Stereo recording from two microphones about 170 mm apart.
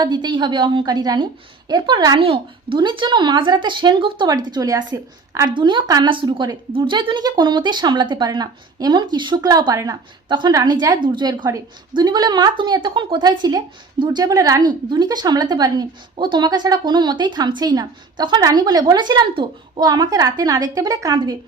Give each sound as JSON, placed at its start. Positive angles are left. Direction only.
{"t": 0.0, "sound": "a woman's voice", "side_deg": -25}